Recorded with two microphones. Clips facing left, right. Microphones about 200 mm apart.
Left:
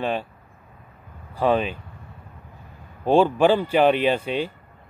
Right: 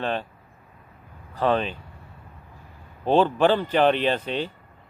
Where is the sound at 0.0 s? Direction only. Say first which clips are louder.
Left 2 dB; 10° left (ahead or behind).